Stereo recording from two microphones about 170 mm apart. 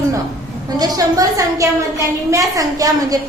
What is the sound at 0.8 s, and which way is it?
A woman's voice, 20° right (ahead or behind).